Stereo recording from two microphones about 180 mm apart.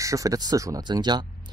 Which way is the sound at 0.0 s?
20° right (ahead or behind).